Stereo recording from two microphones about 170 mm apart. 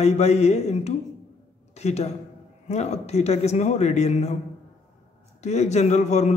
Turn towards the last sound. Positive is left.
turn(degrees=40)  # may be behind; listen again after turning